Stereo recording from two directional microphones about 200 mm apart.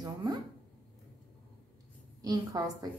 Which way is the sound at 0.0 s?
20° right (ahead or behind).